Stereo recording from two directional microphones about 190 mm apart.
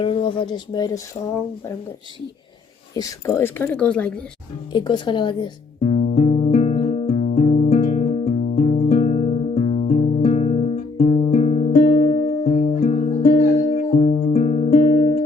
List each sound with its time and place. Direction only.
0.0 s speech: 25° left (ahead or behind)
2.9 s a woman's voice: 15° left (ahead or behind)
4.7 s music: 25° left (ahead or behind)